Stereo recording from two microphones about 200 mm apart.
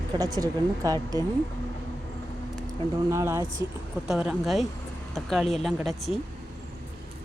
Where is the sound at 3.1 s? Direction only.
15° right (ahead or behind).